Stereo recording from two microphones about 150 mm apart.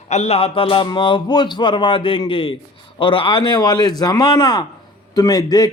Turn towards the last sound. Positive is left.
turn(degrees=25)  # may be behind; listen again after turning